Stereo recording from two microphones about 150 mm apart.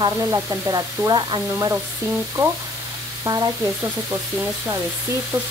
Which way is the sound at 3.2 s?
25° right (ahead or behind).